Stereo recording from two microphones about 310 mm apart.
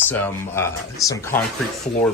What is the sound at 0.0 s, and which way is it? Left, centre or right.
Speech, centre.